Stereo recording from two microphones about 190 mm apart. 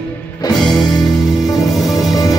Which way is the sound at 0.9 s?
20° left (ahead or behind).